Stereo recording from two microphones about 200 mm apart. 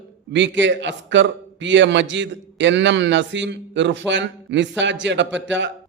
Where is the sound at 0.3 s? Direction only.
65° right (ahead or behind).